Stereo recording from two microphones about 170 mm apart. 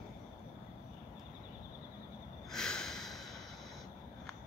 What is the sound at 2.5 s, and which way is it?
Snort, 5° left (ahead or behind).